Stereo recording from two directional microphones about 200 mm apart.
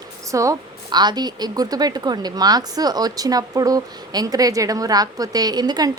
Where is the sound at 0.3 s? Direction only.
15° right (ahead or behind).